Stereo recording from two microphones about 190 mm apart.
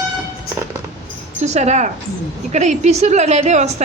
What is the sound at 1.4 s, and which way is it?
A man's voice, 35° right (ahead or behind).